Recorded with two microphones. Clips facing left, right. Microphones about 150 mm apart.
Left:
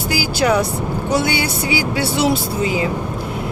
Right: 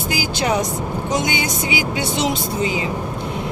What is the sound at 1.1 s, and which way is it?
Speech, 15° right (ahead or behind).